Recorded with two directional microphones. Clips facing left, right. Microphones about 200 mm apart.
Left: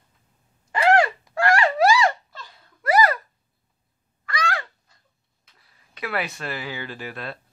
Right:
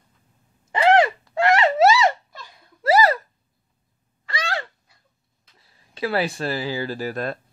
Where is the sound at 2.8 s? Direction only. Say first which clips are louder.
Right 2 dB; 25° right (ahead or behind).